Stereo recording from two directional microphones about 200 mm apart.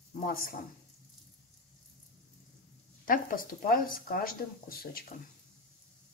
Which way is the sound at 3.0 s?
45° left (ahead or behind).